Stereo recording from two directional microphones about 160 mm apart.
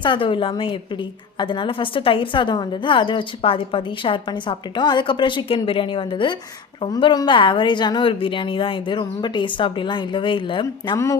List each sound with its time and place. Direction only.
0.0 s a woman's voice: 30° left (ahead or behind)
10.9 s speech: 20° left (ahead or behind)